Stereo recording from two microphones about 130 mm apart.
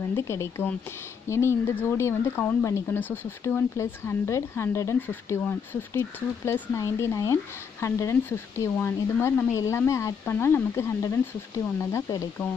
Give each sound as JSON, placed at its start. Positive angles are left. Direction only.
{"t": 0.1, "sound": "speech", "side_deg": 20}